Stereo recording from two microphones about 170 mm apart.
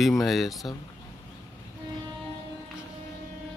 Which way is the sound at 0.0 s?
Centre (ahead or behind).